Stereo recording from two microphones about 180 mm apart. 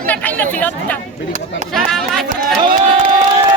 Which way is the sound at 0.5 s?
10° left (ahead or behind).